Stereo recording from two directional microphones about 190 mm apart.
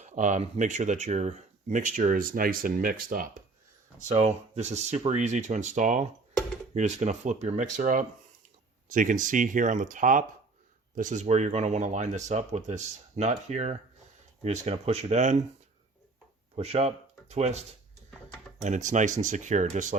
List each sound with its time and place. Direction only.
0.0 s speech: 40° right (ahead or behind)
4.1 s speech: 35° right (ahead or behind)
16.6 s speech: 30° right (ahead or behind)
18.6 s speech: 40° right (ahead or behind)